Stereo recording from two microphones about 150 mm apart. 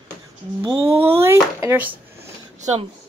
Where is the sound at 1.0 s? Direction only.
15° right (ahead or behind).